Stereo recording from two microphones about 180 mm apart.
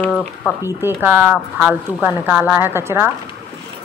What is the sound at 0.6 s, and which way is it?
Speech, 15° right (ahead or behind).